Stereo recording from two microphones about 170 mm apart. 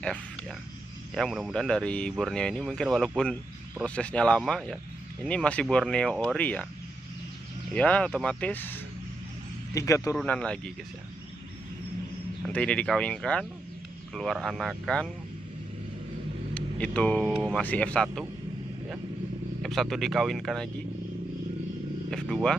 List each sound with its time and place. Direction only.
1.1 s speech: centre (ahead or behind)
7.7 s speech: 5° left (ahead or behind)
9.8 s speech: 20° left (ahead or behind)
10.1 s speech: 5° left (ahead or behind)
12.4 s speech: 5° left (ahead or behind)
16.5 s speech: 5° left (ahead or behind)
19.6 s speech: centre (ahead or behind)
22.1 s speech: 5° left (ahead or behind)